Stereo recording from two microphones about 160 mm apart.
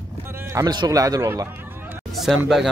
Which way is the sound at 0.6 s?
25° right (ahead or behind).